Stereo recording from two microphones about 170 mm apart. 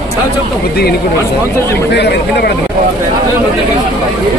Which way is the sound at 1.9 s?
75° left (ahead or behind).